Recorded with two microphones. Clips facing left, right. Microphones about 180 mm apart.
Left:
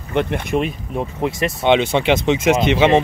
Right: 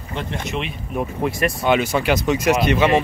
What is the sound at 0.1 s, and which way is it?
Speech, 60° left (ahead or behind).